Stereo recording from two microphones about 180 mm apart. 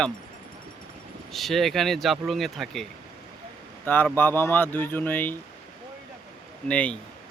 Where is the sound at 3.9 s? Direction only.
10° left (ahead or behind).